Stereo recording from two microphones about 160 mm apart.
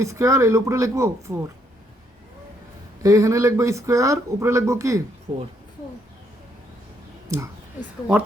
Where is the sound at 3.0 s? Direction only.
20° right (ahead or behind).